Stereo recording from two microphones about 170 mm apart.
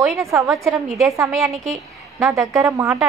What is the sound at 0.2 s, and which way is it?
Speech, 15° right (ahead or behind).